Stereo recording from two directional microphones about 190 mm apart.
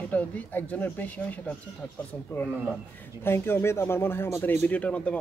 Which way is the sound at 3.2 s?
15° left (ahead or behind).